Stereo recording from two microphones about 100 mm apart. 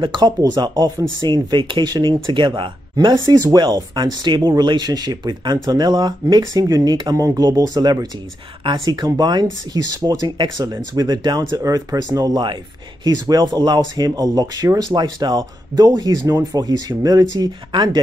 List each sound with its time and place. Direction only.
0.0 s speech: 50° right (ahead or behind)
0.4 s speech: 40° right (ahead or behind)